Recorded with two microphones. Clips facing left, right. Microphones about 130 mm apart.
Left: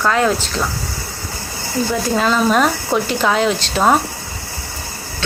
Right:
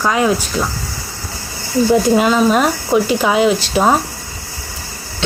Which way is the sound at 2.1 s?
10° right (ahead or behind).